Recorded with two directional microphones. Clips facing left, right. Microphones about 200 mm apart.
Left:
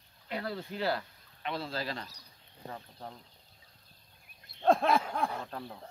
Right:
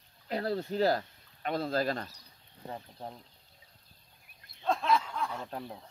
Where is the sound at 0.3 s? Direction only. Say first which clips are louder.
Right 5 dB; 40° right (ahead or behind).